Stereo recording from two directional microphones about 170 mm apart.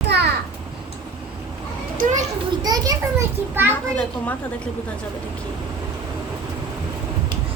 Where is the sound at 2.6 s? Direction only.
20° right (ahead or behind).